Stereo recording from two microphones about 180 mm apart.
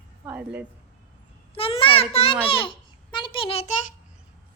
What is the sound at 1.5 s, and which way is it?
A child's voice, 30° left (ahead or behind).